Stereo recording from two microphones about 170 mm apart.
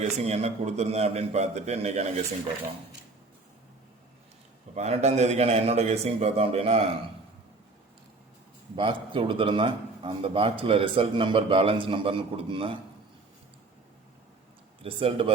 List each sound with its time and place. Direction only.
0.0 s a man's voice: 40° right (ahead or behind)
4.7 s a man's voice: 40° right (ahead or behind)
8.7 s a man's voice: 30° right (ahead or behind)
14.8 s a man's voice: 30° right (ahead or behind)